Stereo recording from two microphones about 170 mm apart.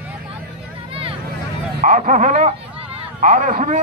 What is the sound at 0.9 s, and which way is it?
Vehicle, 35° right (ahead or behind).